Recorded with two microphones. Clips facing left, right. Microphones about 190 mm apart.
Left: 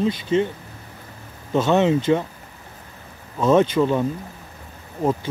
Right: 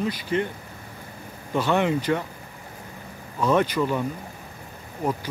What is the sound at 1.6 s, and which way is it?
Speech, 20° left (ahead or behind).